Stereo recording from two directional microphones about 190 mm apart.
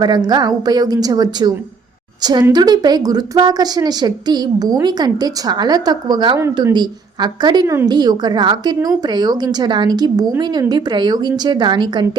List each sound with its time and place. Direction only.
0.0 s a woman's voice: 20° right (ahead or behind)